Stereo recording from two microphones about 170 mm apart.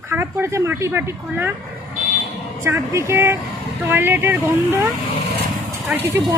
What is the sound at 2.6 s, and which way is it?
Speech, 15° right (ahead or behind).